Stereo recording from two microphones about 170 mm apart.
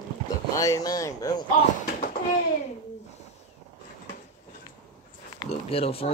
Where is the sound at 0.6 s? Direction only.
20° left (ahead or behind).